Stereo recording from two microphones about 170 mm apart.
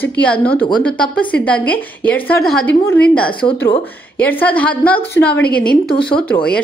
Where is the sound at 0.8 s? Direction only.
10° left (ahead or behind).